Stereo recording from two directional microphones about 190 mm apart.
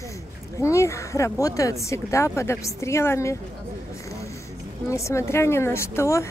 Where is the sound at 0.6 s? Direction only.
15° left (ahead or behind).